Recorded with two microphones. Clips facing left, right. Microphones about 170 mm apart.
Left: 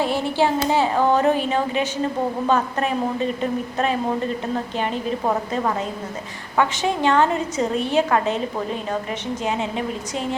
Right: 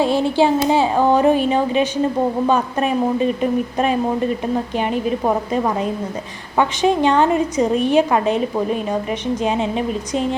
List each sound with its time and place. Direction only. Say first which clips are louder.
0.0 s a woman's voice: right 5 dB; 15° right (ahead or behind)